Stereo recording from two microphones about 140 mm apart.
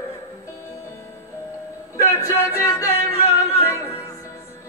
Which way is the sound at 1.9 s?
25° left (ahead or behind).